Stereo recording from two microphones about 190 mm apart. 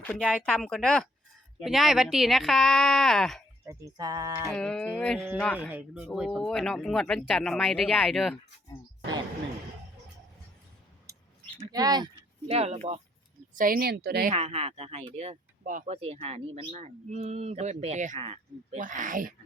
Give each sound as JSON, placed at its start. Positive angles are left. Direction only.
{"t": 0.0, "sound": "speech", "side_deg": 5}
{"t": 3.7, "sound": "music", "side_deg": -20}
{"t": 4.5, "sound": "speech", "side_deg": 5}
{"t": 5.5, "sound": "speech", "side_deg": -10}
{"t": 11.1, "sound": "a sound", "side_deg": -15}
{"t": 11.7, "sound": "speech", "side_deg": -20}
{"t": 13.5, "sound": "a woman's voice", "side_deg": -45}
{"t": 14.3, "sound": "speech", "side_deg": -35}